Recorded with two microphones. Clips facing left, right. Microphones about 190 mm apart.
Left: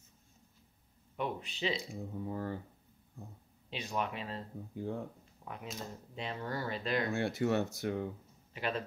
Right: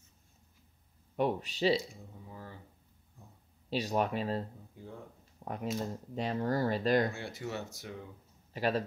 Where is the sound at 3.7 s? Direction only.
40° right (ahead or behind).